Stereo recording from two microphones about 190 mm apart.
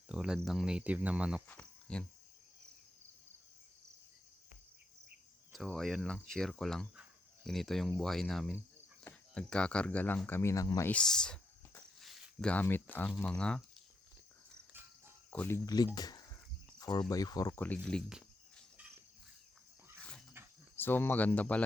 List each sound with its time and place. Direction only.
0.1 s speech: 5° right (ahead or behind)
1.5 s cricket: 5° left (ahead or behind)
5.5 s speech: centre (ahead or behind); by 10.9 s 15° left (ahead or behind)
10.9 s speech: 5° left (ahead or behind)
14.7 s cricket: 10° right (ahead or behind)
15.3 s speech: 10° left (ahead or behind)
17.8 s cricket: 5° left (ahead or behind)
20.7 s speech: 10° left (ahead or behind)